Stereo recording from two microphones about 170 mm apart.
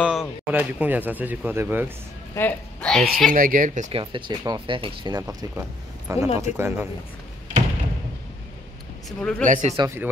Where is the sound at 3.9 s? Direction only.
30° right (ahead or behind); by 6.8 s 15° right (ahead or behind).